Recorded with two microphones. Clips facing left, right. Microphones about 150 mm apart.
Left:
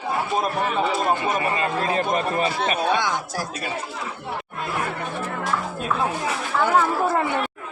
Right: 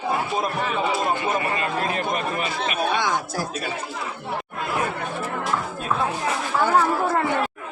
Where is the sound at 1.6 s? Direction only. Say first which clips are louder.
Left 2 dB; 30° left (ahead or behind).